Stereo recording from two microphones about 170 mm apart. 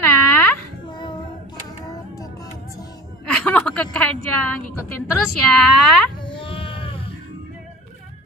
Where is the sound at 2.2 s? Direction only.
20° left (ahead or behind).